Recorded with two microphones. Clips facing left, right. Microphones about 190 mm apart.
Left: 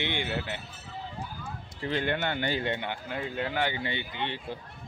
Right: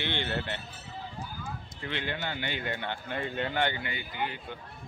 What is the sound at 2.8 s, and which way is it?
Speech, 10° left (ahead or behind).